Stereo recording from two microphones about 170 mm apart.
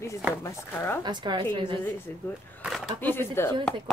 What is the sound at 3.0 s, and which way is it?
Speech, 15° left (ahead or behind).